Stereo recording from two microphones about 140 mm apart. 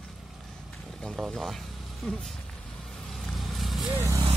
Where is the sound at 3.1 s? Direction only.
Centre (ahead or behind).